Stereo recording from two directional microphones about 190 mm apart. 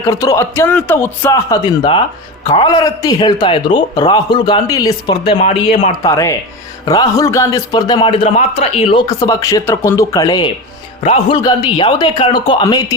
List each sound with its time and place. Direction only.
0.1 s a man's voice: 15° left (ahead or behind); by 5.9 s 30° left (ahead or behind)
6.0 s a man's voice: 20° left (ahead or behind)
11.0 s a man's voice: 35° left (ahead or behind)